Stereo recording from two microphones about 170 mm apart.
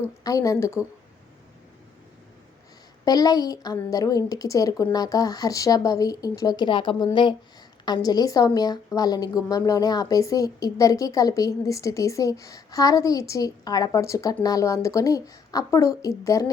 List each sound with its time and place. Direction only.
0.3 s a woman's voice: 20° left (ahead or behind)
3.0 s a woman's voice: 20° left (ahead or behind)